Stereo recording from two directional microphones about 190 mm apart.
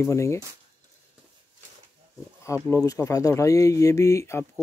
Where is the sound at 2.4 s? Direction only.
15° left (ahead or behind).